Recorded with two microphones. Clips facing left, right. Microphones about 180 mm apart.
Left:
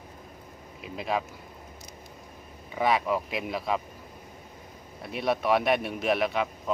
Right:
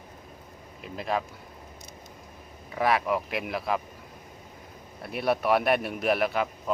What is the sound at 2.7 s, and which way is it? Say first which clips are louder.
A man's voice: even; centre (ahead or behind).